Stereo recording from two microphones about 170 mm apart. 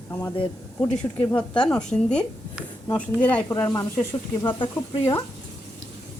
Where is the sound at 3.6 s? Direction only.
20° left (ahead or behind).